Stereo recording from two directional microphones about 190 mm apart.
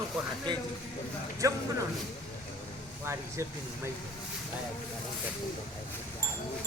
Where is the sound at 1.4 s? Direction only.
15° right (ahead or behind).